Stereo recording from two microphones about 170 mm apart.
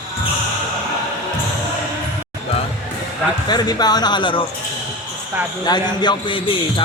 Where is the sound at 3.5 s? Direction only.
25° left (ahead or behind).